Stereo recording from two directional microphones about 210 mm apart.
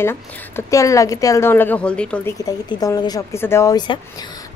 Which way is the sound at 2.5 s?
20° left (ahead or behind).